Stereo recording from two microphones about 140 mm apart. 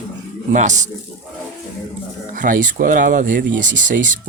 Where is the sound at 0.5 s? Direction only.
60° right (ahead or behind).